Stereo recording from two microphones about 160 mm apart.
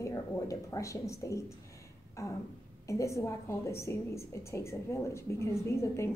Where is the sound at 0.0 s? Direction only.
20° left (ahead or behind).